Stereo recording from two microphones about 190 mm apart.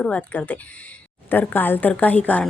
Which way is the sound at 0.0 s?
5° left (ahead or behind).